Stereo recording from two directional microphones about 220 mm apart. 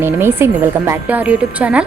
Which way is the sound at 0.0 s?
10° right (ahead or behind).